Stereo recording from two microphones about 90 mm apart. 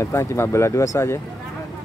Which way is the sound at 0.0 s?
30° left (ahead or behind).